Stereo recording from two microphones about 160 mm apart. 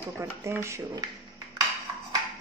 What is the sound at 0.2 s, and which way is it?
Speech, 15° right (ahead or behind).